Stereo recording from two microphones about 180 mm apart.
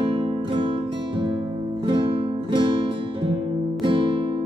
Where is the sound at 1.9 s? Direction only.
25° right (ahead or behind).